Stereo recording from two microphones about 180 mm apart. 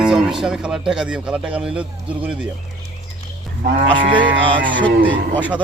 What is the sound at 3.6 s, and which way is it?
Cattle, 90° right.